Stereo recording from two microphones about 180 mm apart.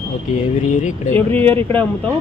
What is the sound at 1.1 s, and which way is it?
Speech, 10° left (ahead or behind).